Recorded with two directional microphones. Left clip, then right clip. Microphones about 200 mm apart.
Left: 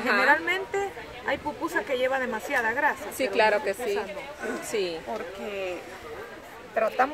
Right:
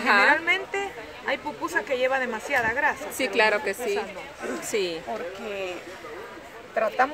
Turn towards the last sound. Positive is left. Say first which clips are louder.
# right 1 dB
turn(degrees=0)  # may be behind; listen again after turning